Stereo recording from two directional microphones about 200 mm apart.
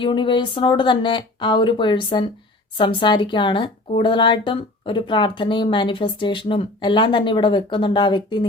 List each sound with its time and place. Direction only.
0.0 s speech: 25° left (ahead or behind)